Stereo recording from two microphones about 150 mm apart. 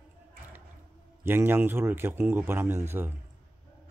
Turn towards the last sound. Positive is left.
turn(degrees=-15)  # may be behind; listen again after turning